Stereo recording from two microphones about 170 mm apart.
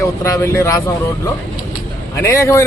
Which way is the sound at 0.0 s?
15° left (ahead or behind).